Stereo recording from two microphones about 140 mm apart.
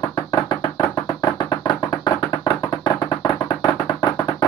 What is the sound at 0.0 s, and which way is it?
Music, 30° left (ahead or behind).